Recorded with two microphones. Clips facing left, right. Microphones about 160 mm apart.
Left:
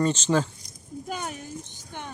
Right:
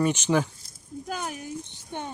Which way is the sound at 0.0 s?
10° right (ahead or behind).